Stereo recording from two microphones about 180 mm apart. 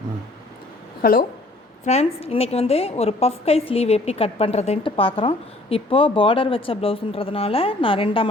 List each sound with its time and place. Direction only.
1.0 s a woman's voice: 50° left (ahead or behind)
1.8 s a woman's voice: 35° left (ahead or behind)